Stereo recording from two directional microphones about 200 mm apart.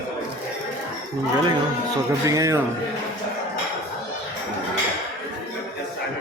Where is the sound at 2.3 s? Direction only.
15° right (ahead or behind).